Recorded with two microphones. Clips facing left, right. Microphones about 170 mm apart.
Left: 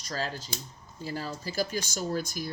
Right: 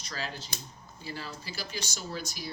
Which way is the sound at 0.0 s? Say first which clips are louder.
Left 5 dB; 45° left (ahead or behind).